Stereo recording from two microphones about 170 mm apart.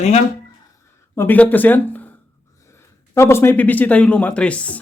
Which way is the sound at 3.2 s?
15° left (ahead or behind).